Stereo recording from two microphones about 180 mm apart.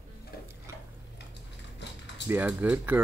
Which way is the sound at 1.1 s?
75° left (ahead or behind).